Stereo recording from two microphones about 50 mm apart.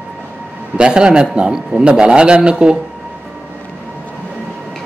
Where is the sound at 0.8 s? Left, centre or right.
Centre.